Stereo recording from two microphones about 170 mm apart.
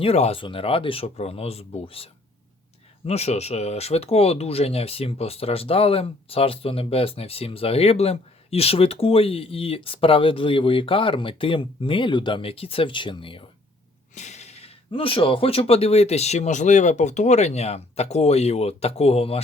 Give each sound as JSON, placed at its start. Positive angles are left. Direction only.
{"t": 0.0, "sound": "speech", "side_deg": 35}
{"t": 3.1, "sound": "speech", "side_deg": 40}
{"t": 14.2, "sound": "speech", "side_deg": 40}